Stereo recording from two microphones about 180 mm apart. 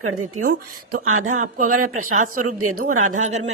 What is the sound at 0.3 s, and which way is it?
Speech, 50° right (ahead or behind).